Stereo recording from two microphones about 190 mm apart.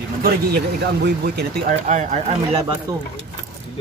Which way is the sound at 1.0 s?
60° right (ahead or behind).